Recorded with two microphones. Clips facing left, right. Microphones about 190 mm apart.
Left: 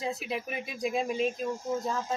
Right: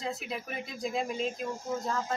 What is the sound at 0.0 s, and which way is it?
Speech, 20° left (ahead or behind).